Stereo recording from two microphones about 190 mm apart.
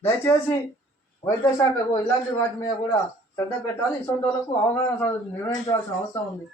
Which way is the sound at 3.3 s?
15° left (ahead or behind).